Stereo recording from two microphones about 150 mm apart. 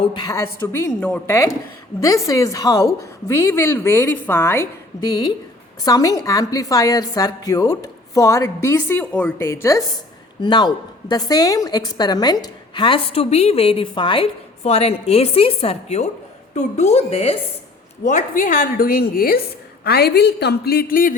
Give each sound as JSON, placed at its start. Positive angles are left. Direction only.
{"t": 0.0, "sound": "a woman's voice", "side_deg": 30}
{"t": 2.0, "sound": "a woman's voice", "side_deg": 20}
{"t": 10.4, "sound": "a woman's voice", "side_deg": 30}
{"t": 14.6, "sound": "a woman's voice", "side_deg": 45}
{"t": 18.0, "sound": "a woman's voice", "side_deg": 55}
{"t": 19.8, "sound": "a woman's voice", "side_deg": 90}